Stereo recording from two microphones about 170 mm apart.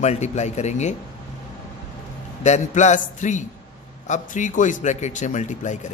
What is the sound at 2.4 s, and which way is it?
Speech, 45° left (ahead or behind).